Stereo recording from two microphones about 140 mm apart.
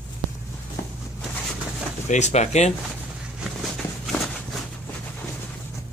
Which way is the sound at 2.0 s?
55° left (ahead or behind).